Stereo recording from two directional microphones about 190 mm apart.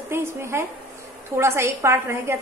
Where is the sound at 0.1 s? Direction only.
15° right (ahead or behind).